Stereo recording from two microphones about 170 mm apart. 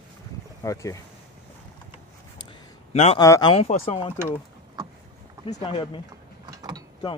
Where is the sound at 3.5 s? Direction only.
35° left (ahead or behind).